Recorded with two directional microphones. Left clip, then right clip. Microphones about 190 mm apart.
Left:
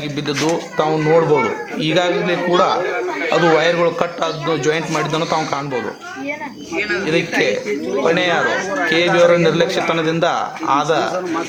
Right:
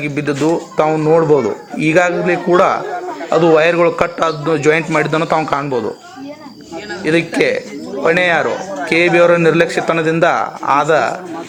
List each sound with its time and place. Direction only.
0.8 s a man's voice: 20° right (ahead or behind)
7.0 s a man's voice: 25° right (ahead or behind)